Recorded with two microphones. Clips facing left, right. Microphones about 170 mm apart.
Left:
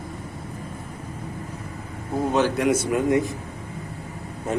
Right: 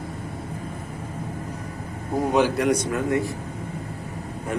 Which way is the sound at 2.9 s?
20° left (ahead or behind).